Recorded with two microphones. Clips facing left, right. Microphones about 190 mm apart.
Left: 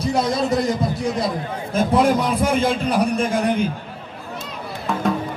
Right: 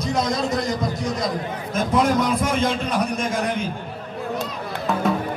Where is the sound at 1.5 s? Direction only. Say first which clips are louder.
Left 4 dB; 30° left (ahead or behind).